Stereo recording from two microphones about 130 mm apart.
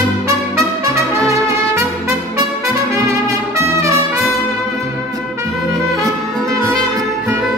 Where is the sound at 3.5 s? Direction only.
20° right (ahead or behind).